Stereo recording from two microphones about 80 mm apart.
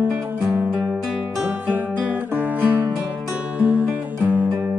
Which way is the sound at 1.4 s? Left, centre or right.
Right.